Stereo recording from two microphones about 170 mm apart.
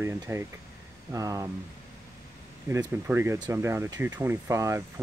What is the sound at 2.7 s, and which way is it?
Speech, 15° right (ahead or behind).